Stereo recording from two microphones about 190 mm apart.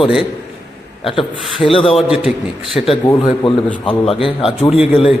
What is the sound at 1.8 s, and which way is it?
A man's voice, centre (ahead or behind).